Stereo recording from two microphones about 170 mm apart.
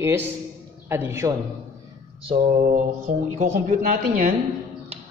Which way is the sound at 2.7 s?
45° right (ahead or behind).